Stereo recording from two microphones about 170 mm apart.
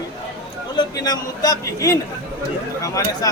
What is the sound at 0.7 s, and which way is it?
A man's voice, 25° left (ahead or behind).